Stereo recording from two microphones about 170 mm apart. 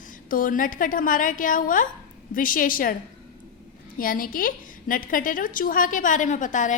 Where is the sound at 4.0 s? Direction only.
55° left (ahead or behind).